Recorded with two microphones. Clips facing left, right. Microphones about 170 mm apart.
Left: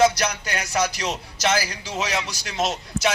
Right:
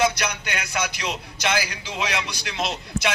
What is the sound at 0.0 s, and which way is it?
A man's voice, 40° left (ahead or behind).